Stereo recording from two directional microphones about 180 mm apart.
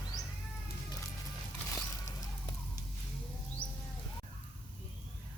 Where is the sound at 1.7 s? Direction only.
20° left (ahead or behind).